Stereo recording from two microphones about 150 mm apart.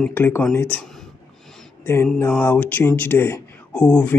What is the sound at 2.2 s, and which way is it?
Speech, 10° left (ahead or behind).